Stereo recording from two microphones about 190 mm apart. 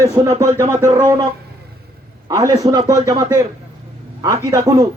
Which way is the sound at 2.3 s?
20° right (ahead or behind).